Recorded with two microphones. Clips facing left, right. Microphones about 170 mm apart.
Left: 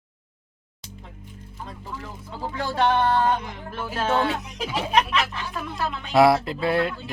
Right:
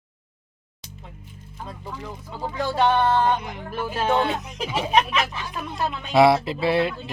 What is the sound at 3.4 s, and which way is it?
Speech, 10° right (ahead or behind).